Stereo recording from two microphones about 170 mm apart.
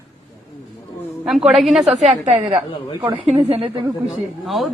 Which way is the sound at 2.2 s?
35° right (ahead or behind).